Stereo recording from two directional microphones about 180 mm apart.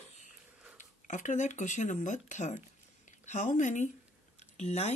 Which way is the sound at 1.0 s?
45° left (ahead or behind).